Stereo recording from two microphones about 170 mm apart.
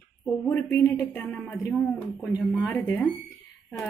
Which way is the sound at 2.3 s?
15° left (ahead or behind).